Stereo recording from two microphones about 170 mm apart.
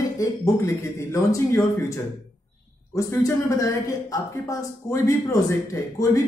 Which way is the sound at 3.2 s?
20° left (ahead or behind).